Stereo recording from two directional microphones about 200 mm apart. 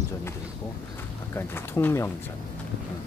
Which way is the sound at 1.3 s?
10° left (ahead or behind).